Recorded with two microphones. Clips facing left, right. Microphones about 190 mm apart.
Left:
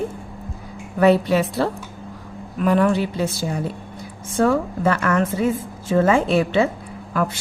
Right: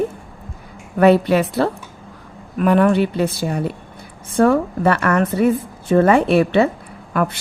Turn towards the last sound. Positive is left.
turn(degrees=-60)  # may be behind; listen again after turning